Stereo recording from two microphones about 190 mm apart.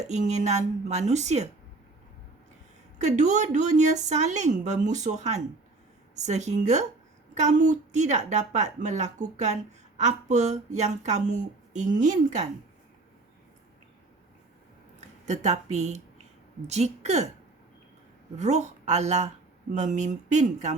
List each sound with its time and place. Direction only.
0.0 s speech: 35° right (ahead or behind)
3.0 s speech: 40° right (ahead or behind)
15.3 s speech: 40° right (ahead or behind)
18.3 s speech: 40° right (ahead or behind)